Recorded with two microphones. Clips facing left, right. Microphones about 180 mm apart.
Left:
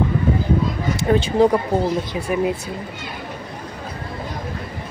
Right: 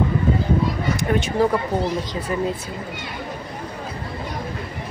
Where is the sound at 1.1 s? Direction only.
30° left (ahead or behind).